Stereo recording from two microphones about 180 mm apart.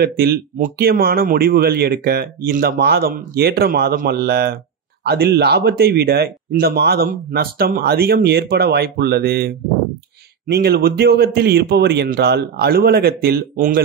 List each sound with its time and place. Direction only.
0.0 s speech: 60° right (ahead or behind)